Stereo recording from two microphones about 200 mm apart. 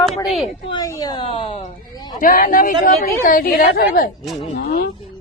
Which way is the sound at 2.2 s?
45° left (ahead or behind).